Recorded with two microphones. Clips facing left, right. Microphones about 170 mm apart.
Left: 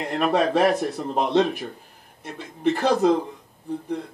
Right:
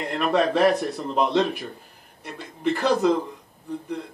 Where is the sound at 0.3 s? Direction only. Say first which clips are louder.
Right 1 dB; 55° left (ahead or behind).